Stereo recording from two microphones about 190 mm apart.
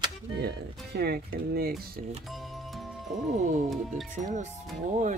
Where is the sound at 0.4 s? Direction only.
55° right (ahead or behind).